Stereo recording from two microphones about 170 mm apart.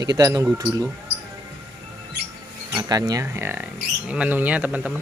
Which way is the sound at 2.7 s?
25° right (ahead or behind).